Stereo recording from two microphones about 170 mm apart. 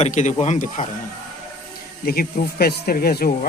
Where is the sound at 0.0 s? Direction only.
45° left (ahead or behind).